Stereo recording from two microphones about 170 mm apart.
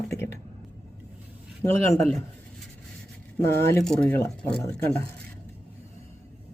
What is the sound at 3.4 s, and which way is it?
Speech, 15° left (ahead or behind).